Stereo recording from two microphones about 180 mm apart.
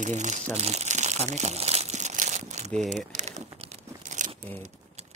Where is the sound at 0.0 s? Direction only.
40° right (ahead or behind).